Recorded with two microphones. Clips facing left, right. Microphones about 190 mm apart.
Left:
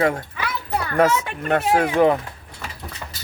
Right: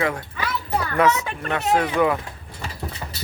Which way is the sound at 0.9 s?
50° left (ahead or behind).